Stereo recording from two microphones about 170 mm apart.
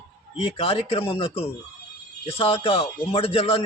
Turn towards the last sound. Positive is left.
turn(degrees=35)  # may be behind; listen again after turning